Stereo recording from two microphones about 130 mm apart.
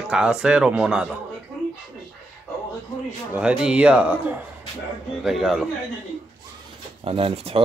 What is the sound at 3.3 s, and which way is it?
A man's voice, 10° right (ahead or behind).